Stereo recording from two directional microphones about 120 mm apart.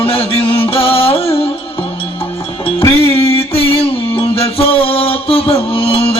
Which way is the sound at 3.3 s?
50° left (ahead or behind).